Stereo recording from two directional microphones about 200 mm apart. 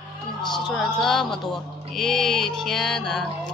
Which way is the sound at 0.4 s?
Centre (ahead or behind).